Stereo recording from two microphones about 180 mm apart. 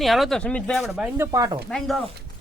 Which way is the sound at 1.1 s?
20° right (ahead or behind).